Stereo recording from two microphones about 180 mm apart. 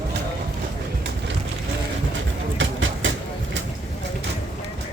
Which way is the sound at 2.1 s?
90° right.